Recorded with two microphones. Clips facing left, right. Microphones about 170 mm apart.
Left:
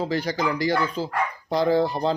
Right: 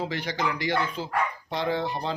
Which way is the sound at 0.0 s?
35° left (ahead or behind).